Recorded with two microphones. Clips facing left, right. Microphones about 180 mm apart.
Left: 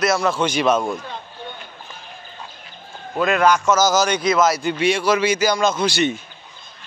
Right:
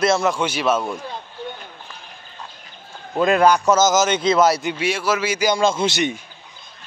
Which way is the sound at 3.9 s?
20° right (ahead or behind).